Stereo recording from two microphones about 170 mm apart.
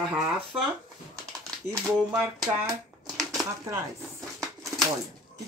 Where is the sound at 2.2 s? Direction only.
5° right (ahead or behind).